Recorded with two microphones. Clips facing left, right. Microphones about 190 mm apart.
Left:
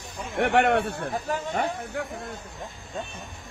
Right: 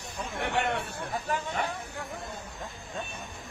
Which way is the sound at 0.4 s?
60° left (ahead or behind).